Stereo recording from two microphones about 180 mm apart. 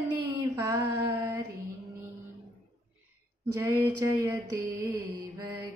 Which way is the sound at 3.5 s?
15° right (ahead or behind).